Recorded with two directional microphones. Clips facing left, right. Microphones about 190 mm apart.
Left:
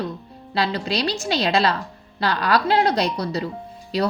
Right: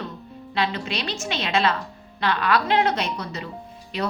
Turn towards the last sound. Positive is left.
turn(degrees=35)  # may be behind; listen again after turning